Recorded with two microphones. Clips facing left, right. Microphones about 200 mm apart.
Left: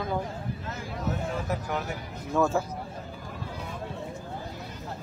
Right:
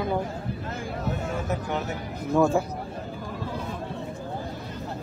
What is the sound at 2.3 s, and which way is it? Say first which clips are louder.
Speech: right 4 dB; 15° right (ahead or behind).